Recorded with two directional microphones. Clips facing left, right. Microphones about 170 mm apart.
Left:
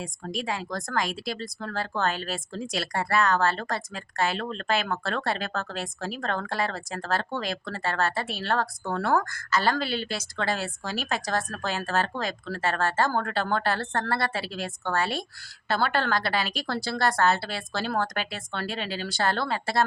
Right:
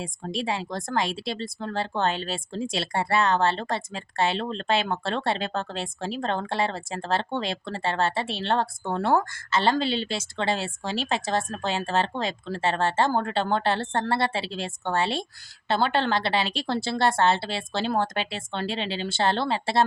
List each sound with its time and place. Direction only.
0.0 s speech: 30° right (ahead or behind)